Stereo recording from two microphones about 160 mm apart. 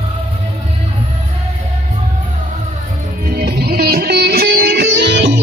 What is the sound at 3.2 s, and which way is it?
Music, 70° right (ahead or behind).